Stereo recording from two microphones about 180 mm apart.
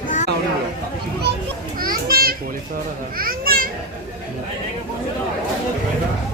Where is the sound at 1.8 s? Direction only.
55° right (ahead or behind).